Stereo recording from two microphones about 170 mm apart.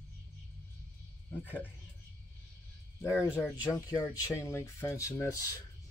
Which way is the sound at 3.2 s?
15° left (ahead or behind).